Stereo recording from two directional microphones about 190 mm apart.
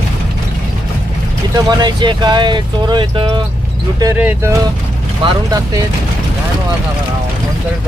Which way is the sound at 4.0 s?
15° right (ahead or behind).